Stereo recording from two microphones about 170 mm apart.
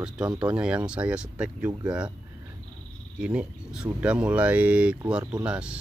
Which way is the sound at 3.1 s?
5° right (ahead or behind).